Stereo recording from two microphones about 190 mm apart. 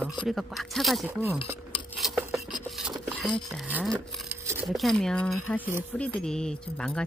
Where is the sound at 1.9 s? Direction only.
Centre (ahead or behind).